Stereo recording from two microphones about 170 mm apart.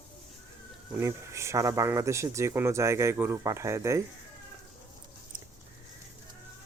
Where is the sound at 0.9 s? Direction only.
15° right (ahead or behind).